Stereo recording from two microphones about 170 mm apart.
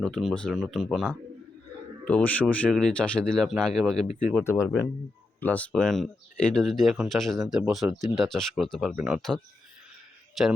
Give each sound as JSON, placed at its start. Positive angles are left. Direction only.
{"t": 0.0, "sound": "speech", "side_deg": 0}
{"t": 4.4, "sound": "speech", "side_deg": 15}